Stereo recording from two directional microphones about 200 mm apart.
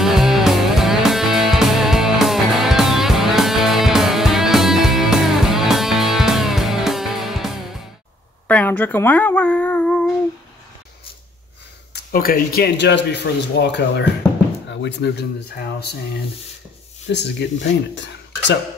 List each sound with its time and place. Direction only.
0.0 s music: centre (ahead or behind)
8.5 s speech: 10° left (ahead or behind)
11.9 s a man's voice: 45° left (ahead or behind)
17.1 s a man's voice: 60° left (ahead or behind)